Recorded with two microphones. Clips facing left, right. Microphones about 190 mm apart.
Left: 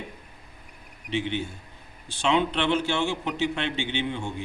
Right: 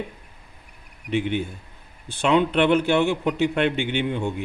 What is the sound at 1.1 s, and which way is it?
Speech, 55° right (ahead or behind).